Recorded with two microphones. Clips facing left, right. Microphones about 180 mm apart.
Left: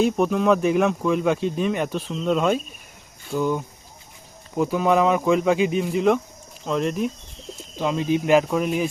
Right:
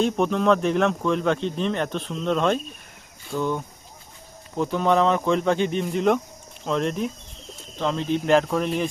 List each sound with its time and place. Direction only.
0.0 s speech: 5° left (ahead or behind)